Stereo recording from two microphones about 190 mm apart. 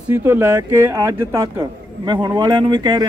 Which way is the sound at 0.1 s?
10° right (ahead or behind).